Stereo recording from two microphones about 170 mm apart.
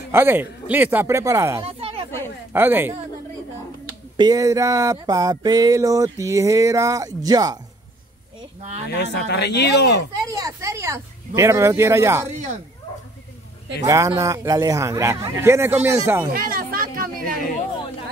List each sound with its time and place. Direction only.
0.1 s a man's voice: 10° right (ahead or behind)
1.6 s a sound: 35° right (ahead or behind)
2.5 s a man's voice: 15° right (ahead or behind)
4.2 s a sound: 20° right (ahead or behind)
8.9 s speech: 80° left
10.1 s a man's voice: 20° right (ahead or behind)
13.8 s a man's voice: 20° right (ahead or behind)
16.3 s speech: 60° right (ahead or behind)